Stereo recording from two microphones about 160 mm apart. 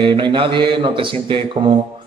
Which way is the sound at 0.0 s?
30° right (ahead or behind).